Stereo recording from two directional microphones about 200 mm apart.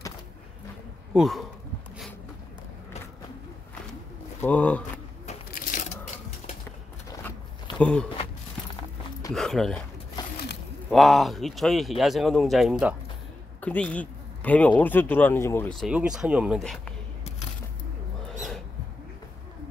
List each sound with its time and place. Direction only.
1.1 s speech: centre (ahead or behind)
4.4 s speech: 5° left (ahead or behind)
5.5 s crushing: 40° left (ahead or behind)
7.1 s a sound: 20° left (ahead or behind)
7.8 s speech: 5° left (ahead or behind)
9.3 s speech: centre (ahead or behind)
10.9 s speech: centre (ahead or behind)
13.6 s speech: 10° left (ahead or behind)
15.9 s speech: 5° right (ahead or behind)